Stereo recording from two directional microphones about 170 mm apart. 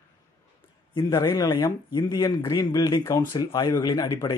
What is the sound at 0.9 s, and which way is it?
Speech, 20° left (ahead or behind).